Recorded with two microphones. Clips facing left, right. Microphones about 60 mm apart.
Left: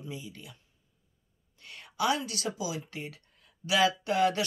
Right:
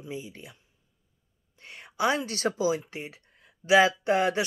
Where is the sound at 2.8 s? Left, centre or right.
Right.